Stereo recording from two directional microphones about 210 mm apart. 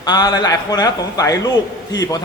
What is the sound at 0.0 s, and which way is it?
A man's voice, 20° left (ahead or behind).